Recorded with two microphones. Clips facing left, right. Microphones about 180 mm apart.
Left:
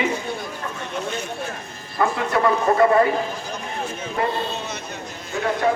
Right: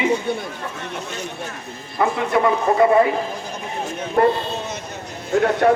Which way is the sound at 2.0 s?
15° right (ahead or behind).